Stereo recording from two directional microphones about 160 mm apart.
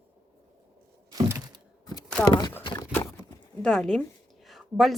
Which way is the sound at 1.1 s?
25° right (ahead or behind).